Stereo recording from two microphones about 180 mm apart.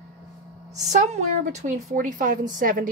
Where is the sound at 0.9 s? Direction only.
40° right (ahead or behind).